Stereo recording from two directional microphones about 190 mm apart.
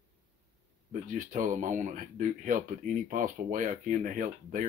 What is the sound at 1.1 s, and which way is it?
Speech, 45° right (ahead or behind).